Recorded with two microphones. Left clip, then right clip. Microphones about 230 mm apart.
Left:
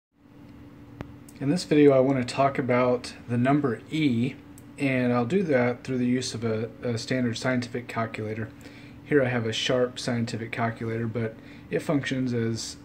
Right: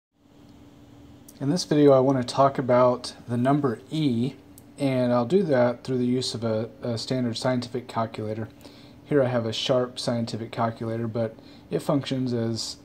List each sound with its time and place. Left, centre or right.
1.7 s speech: centre
2.0 s speech: centre
2.2 s speech: centre